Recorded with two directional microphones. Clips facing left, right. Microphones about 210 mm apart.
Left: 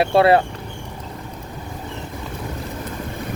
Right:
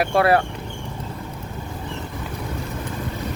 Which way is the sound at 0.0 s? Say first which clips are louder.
Left 3 dB; 25° left (ahead or behind).